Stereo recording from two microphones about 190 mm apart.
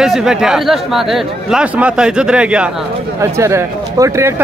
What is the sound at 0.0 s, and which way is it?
A man's voice, centre (ahead or behind).